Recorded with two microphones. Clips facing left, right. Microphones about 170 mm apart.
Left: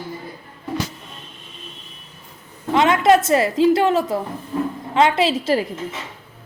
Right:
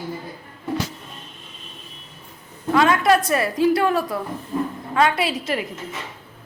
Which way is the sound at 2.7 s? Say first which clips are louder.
Left 2 dB; 20° left (ahead or behind).